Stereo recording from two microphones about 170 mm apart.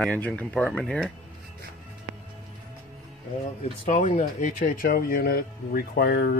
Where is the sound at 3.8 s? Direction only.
50° left (ahead or behind); by 6.4 s 70° left (ahead or behind).